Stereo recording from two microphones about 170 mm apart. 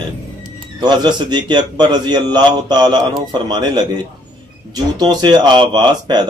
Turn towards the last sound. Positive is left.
turn(degrees=-25)  # may be behind; listen again after turning